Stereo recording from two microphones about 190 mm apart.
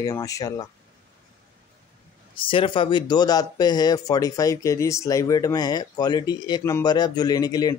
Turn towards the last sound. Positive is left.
turn(degrees=20)  # may be behind; listen again after turning